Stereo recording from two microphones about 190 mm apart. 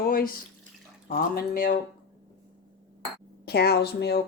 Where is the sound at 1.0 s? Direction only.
45° left (ahead or behind).